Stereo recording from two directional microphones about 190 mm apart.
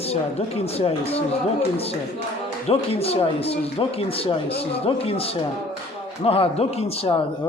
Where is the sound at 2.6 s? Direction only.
30° left (ahead or behind).